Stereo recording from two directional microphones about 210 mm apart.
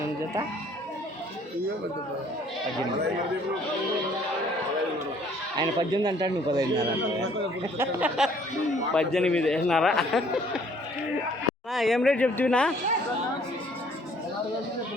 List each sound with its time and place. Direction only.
5.5 s speech: 20° right (ahead or behind)
7.8 s a man's voice: 5° right (ahead or behind)
11.7 s a man's voice: centre (ahead or behind)